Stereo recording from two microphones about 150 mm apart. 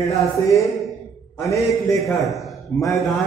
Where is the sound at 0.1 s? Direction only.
20° left (ahead or behind).